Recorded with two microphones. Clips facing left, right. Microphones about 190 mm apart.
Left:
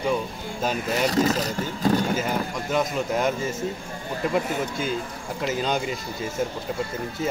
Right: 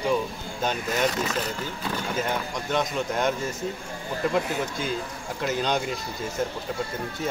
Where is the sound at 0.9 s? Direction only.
35° left (ahead or behind).